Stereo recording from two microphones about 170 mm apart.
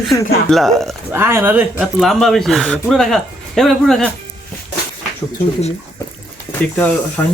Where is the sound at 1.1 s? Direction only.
15° right (ahead or behind).